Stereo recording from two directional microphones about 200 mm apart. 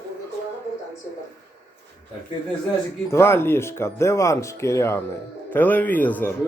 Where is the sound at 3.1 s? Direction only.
15° left (ahead or behind).